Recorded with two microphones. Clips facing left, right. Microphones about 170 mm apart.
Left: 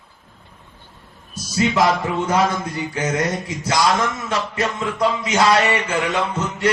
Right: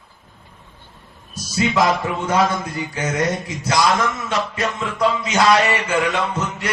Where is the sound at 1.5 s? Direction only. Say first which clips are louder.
Even; 30° left (ahead or behind).